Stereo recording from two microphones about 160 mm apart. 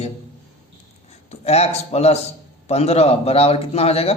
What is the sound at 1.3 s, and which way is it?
A man's voice, 40° left (ahead or behind).